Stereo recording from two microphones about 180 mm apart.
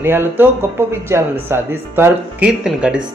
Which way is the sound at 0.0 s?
10° right (ahead or behind).